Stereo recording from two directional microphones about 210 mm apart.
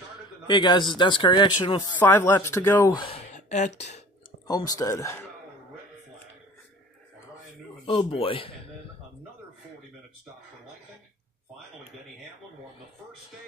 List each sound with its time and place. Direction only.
0.5 s speech: 20° left (ahead or behind)
2.0 s speech: 10° left (ahead or behind)
3.0 s speech: 30° left (ahead or behind)
4.5 s speech: 15° left (ahead or behind)
7.8 s speech: 25° left (ahead or behind)